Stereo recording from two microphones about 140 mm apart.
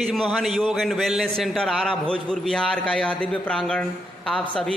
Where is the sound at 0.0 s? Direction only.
Centre (ahead or behind).